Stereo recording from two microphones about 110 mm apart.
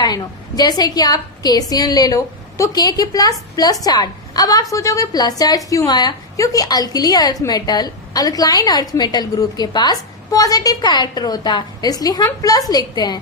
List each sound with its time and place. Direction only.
0.0 s a woman's voice: 40° left (ahead or behind)